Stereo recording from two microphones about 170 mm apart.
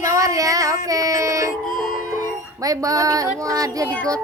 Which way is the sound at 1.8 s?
55° left (ahead or behind).